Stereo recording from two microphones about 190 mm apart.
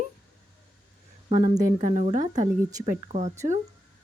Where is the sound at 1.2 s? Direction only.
30° right (ahead or behind).